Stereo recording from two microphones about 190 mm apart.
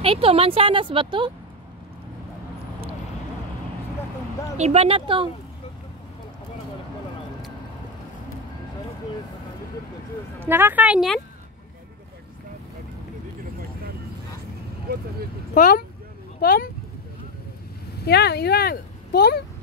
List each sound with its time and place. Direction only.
0.0 s speech: 30° right (ahead or behind)
4.6 s speech: 35° right (ahead or behind)
10.4 s speech: 10° right (ahead or behind)
15.5 s speech: 45° left (ahead or behind)
18.0 s speech: 60° left (ahead or behind)